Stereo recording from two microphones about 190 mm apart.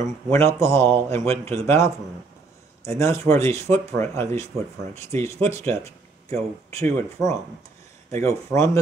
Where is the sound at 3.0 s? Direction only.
15° left (ahead or behind).